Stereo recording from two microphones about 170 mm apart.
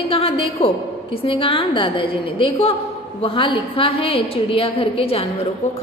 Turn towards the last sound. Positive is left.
turn(degrees=35)  # may be behind; listen again after turning